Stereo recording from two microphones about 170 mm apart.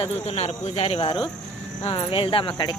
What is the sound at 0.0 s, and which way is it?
Speech, 40° left (ahead or behind).